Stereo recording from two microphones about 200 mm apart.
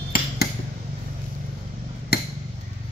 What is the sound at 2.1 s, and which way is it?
Chop, 50° left (ahead or behind).